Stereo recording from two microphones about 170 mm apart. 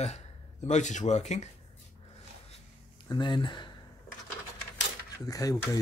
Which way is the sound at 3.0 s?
25° left (ahead or behind).